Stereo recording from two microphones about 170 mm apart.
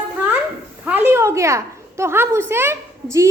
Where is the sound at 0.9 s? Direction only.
15° right (ahead or behind).